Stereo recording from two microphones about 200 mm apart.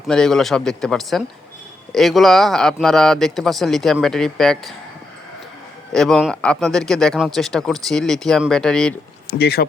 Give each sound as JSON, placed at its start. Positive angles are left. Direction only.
{"t": 0.1, "sound": "speech", "side_deg": 5}
{"t": 5.9, "sound": "speech", "side_deg": 0}
{"t": 9.4, "sound": "speech", "side_deg": 55}